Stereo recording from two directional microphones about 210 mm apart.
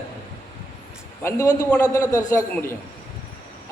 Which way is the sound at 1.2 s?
15° left (ahead or behind).